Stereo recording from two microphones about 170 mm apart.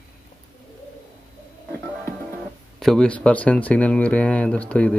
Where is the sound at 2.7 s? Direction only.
5° left (ahead or behind).